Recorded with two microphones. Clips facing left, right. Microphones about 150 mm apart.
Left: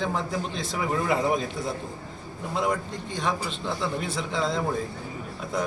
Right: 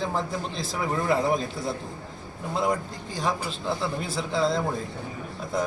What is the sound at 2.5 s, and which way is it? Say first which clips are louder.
A man's voice: right 1 dB; centre (ahead or behind).